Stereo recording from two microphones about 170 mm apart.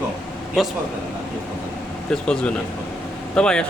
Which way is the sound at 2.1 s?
5° left (ahead or behind).